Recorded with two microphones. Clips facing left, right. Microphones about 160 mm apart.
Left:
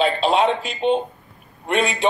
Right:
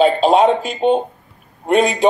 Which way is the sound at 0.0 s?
40° right (ahead or behind).